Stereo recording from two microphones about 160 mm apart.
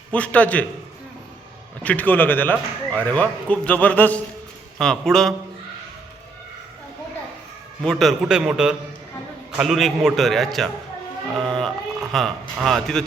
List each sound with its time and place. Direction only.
0.1 s speech: 10° left (ahead or behind)
1.8 s a man's voice: 10° left (ahead or behind)
7.8 s a man's voice: centre (ahead or behind)
11.3 s a sound: 5° left (ahead or behind)
12.1 s a man's voice: centre (ahead or behind)